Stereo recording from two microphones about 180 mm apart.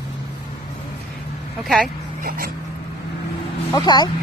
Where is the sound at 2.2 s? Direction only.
50° right (ahead or behind).